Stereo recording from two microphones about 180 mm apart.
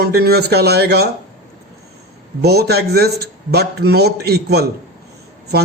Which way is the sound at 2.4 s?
60° right (ahead or behind).